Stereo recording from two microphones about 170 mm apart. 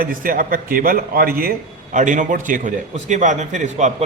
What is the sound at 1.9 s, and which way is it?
A man's voice, 50° right (ahead or behind).